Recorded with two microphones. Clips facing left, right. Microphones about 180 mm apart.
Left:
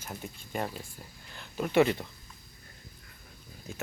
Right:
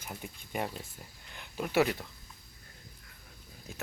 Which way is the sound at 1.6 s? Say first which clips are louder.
Left 4 dB; 5° right (ahead or behind).